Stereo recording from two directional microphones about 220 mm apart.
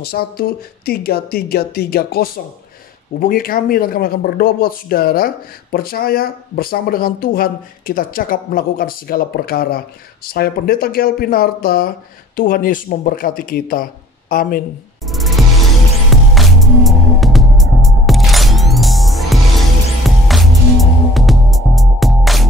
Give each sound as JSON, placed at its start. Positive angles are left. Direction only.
{"t": 0.0, "sound": "speech", "side_deg": 45}
{"t": 15.0, "sound": "music", "side_deg": 0}